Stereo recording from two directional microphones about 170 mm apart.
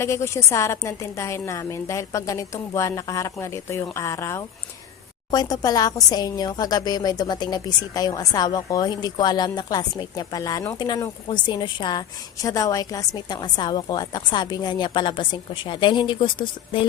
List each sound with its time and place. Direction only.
0.0 s a woman's voice: 15° left (ahead or behind)